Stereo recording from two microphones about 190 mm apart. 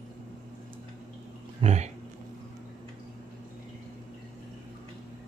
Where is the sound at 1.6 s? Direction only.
35° right (ahead or behind).